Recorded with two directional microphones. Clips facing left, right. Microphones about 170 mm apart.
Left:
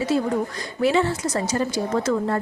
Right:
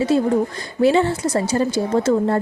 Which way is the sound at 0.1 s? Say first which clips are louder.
Right 4 dB; 25° right (ahead or behind).